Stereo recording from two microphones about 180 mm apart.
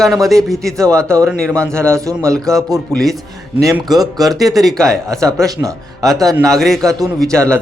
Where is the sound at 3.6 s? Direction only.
20° right (ahead or behind).